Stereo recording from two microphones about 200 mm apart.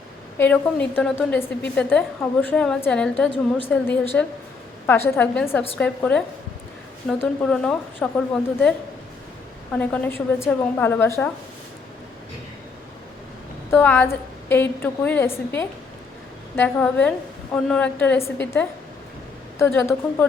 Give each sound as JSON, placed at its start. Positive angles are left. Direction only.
{"t": 0.3, "sound": "a woman's voice", "side_deg": 10}
{"t": 9.7, "sound": "a woman's voice", "side_deg": 10}
{"t": 13.7, "sound": "a woman's voice", "side_deg": 10}